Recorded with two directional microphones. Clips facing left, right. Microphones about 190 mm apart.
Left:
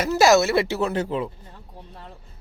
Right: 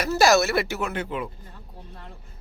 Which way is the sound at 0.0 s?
20° left (ahead or behind).